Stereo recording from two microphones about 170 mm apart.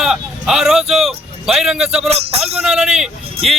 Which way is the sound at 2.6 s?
5° right (ahead or behind).